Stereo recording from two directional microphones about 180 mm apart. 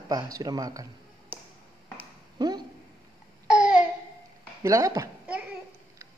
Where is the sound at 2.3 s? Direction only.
20° right (ahead or behind).